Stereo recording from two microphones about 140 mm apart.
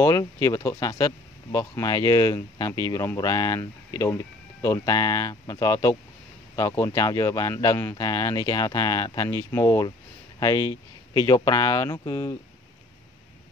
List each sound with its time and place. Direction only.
0.0 s speech: 20° left (ahead or behind)